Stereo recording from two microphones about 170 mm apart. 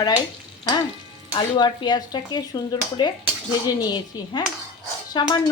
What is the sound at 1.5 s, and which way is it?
Speech, 25° left (ahead or behind).